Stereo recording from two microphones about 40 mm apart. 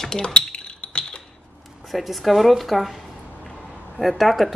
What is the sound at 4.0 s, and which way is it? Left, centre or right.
Speech, centre.